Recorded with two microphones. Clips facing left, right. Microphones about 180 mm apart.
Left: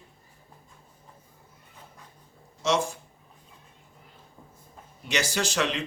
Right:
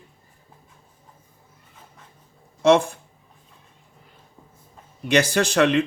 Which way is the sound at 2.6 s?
55° right (ahead or behind).